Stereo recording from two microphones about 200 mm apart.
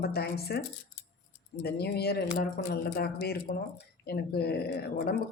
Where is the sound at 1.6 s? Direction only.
55° left (ahead or behind).